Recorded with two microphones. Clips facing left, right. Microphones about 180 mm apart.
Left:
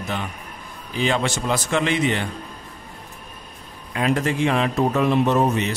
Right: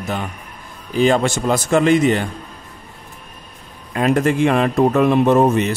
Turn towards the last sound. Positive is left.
turn(degrees=-50)  # may be behind; listen again after turning